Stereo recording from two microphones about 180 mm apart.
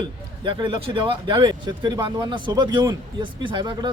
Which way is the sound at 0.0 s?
25° right (ahead or behind).